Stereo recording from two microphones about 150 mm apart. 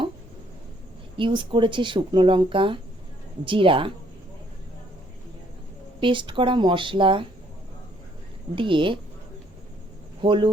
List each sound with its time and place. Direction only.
1.1 s speech: 35° right (ahead or behind)
6.0 s speech: 35° right (ahead or behind)
8.5 s speech: 35° right (ahead or behind)
10.2 s speech: 35° right (ahead or behind)